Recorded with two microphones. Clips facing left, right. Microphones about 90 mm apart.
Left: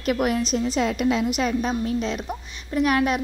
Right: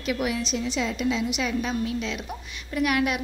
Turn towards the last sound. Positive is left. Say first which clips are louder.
# left 3 dB
turn(degrees=35)  # may be behind; listen again after turning